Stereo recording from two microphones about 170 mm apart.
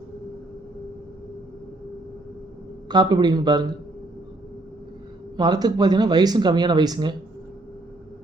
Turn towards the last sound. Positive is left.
turn(degrees=-25)  # may be behind; listen again after turning